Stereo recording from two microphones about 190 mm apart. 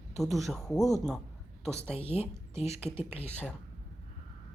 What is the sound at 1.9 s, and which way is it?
Speech, 30° left (ahead or behind).